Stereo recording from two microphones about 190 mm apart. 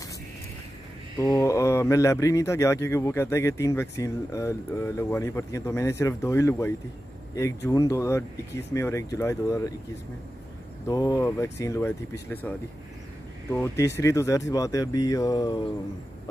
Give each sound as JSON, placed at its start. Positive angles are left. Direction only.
{"t": 1.1, "sound": "speech", "side_deg": 15}
{"t": 10.9, "sound": "speech", "side_deg": 20}